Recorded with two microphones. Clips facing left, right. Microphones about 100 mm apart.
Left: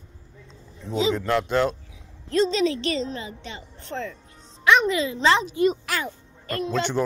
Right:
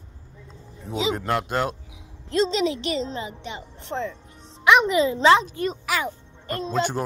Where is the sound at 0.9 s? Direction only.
15° right (ahead or behind).